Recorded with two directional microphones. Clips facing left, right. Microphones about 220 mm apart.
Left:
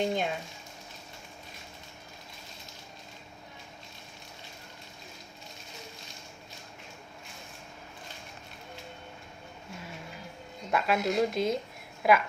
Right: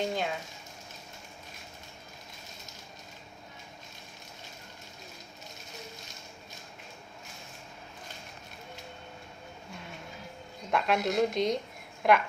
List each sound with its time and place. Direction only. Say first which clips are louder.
0.0 s speech: left 2 dB; 20° left (ahead or behind)
10.7 s a woman's voice: even; 5° left (ahead or behind)